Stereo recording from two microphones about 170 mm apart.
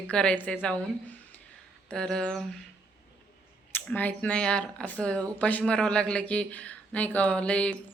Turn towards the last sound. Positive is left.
turn(degrees=5)  # may be behind; listen again after turning